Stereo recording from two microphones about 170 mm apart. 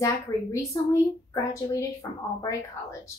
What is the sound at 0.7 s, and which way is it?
A woman's voice, 20° left (ahead or behind).